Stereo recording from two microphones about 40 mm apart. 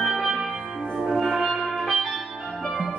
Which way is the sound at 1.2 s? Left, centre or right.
Centre.